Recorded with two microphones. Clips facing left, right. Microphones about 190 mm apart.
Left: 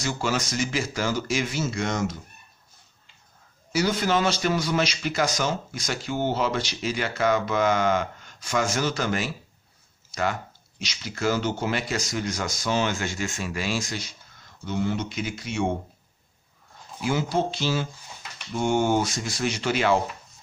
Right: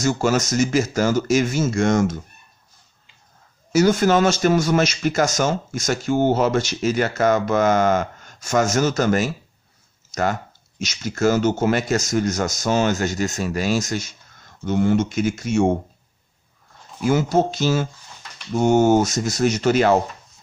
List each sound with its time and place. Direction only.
0.0 s speech: 45° right (ahead or behind)
3.7 s speech: 45° right (ahead or behind)
17.0 s speech: 45° right (ahead or behind)